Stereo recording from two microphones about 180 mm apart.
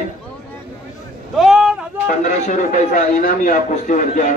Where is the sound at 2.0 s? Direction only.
40° left (ahead or behind).